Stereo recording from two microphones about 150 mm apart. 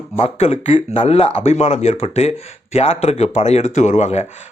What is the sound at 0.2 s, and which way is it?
A man's voice, 40° left (ahead or behind).